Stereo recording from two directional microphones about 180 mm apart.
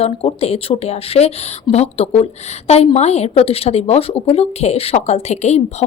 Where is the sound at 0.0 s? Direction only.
35° left (ahead or behind).